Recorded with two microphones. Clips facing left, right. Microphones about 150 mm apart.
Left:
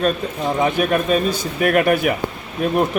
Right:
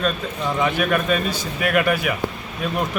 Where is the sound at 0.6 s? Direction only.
35° left (ahead or behind).